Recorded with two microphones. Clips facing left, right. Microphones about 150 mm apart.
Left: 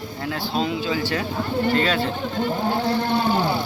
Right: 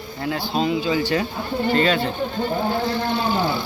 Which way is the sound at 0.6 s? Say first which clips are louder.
Right 3 dB; centre (ahead or behind).